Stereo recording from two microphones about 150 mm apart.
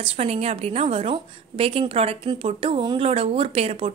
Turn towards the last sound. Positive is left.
turn(degrees=-40)  # may be behind; listen again after turning